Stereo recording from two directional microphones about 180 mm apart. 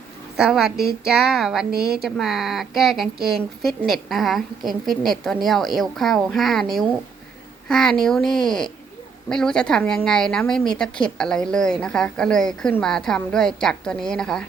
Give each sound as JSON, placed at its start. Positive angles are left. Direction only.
{"t": 0.3, "sound": "a woman's voice", "side_deg": -5}
{"t": 1.7, "sound": "a woman's voice", "side_deg": -60}
{"t": 2.0, "sound": "a woman's voice", "side_deg": 0}